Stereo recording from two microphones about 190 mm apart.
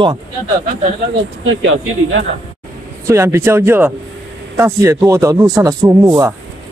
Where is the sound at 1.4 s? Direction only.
90° right.